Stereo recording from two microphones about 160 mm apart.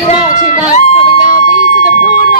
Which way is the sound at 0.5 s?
55° left (ahead or behind).